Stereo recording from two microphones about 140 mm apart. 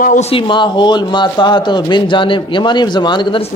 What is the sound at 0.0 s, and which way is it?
Speech, 65° left (ahead or behind).